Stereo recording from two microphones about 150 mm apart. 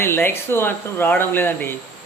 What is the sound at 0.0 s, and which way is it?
Speech, 15° left (ahead or behind).